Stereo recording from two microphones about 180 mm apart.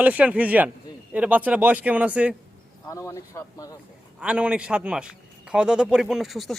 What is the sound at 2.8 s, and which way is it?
Speech, 15° left (ahead or behind).